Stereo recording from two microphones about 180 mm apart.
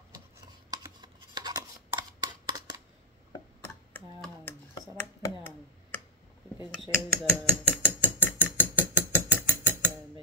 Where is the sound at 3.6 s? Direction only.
10° left (ahead or behind).